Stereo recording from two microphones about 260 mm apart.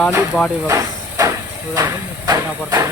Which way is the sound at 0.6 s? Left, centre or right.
Centre.